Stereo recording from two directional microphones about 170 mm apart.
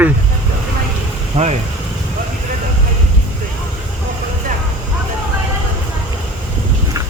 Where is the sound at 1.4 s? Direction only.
40° right (ahead or behind).